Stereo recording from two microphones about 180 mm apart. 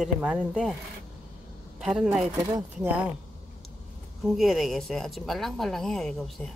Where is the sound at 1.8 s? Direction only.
5° right (ahead or behind).